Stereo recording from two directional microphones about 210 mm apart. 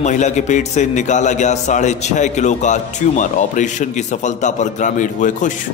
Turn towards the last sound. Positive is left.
turn(degrees=35)  # may be behind; listen again after turning